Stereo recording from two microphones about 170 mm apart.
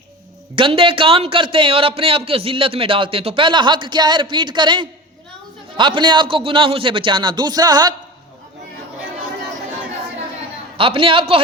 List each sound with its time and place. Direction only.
0.5 s a man's voice: 30° right (ahead or behind)
10.8 s a man's voice: 30° right (ahead or behind)